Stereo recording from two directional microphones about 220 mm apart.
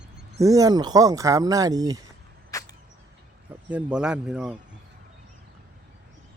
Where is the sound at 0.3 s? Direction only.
15° right (ahead or behind).